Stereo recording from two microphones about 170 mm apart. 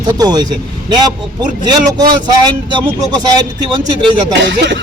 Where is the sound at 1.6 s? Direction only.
25° right (ahead or behind).